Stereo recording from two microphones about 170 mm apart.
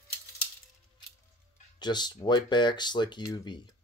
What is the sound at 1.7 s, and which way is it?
Speech, 25° left (ahead or behind).